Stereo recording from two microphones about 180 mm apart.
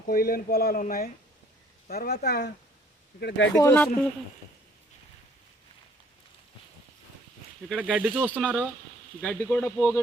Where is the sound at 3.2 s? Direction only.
80° left.